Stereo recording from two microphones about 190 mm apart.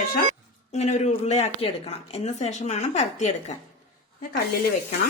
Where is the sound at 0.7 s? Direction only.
35° left (ahead or behind).